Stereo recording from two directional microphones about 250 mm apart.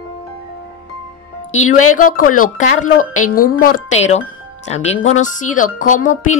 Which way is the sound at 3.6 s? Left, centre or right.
Left.